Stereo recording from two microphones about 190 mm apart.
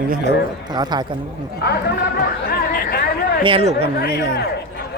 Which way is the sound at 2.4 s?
55° left (ahead or behind).